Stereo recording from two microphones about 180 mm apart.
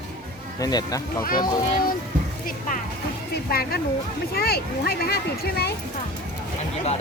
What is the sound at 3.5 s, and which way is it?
Speech, 60° left (ahead or behind).